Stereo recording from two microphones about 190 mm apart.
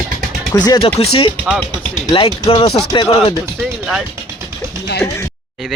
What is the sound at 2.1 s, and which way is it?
Speech, 30° left (ahead or behind).